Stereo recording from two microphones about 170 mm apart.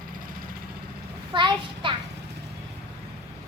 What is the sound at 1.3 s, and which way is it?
Speech, 30° right (ahead or behind).